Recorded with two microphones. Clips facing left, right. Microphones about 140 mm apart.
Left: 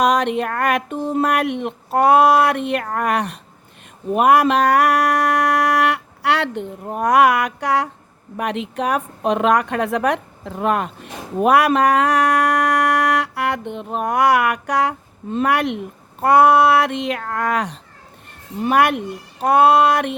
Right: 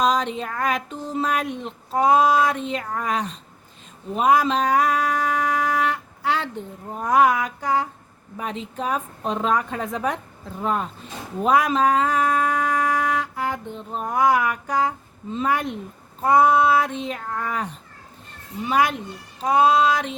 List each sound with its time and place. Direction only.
0.0 s a woman's voice: 70° left (ahead or behind)
4.1 s music: 65° left (ahead or behind)
8.4 s a woman's voice: 70° left (ahead or behind)
18.6 s speech: 65° left (ahead or behind)